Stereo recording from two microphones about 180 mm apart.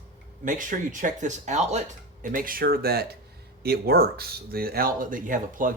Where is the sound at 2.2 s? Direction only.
50° right (ahead or behind).